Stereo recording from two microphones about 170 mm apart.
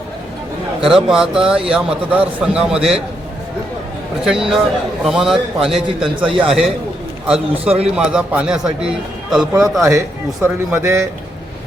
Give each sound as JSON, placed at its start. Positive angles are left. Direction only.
{"t": 0.9, "sound": "a man's voice", "side_deg": -5}
{"t": 4.3, "sound": "a man's voice", "side_deg": 0}
{"t": 10.4, "sound": "a man's voice", "side_deg": -15}